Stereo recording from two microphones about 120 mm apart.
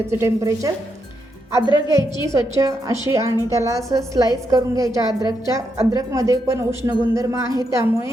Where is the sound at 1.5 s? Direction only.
35° left (ahead or behind).